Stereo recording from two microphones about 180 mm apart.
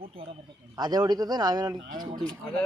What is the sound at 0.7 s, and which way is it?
A man's voice, 20° right (ahead or behind).